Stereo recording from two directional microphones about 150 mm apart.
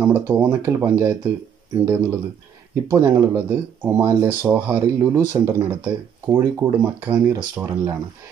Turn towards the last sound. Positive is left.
turn(degrees=-15)  # may be behind; listen again after turning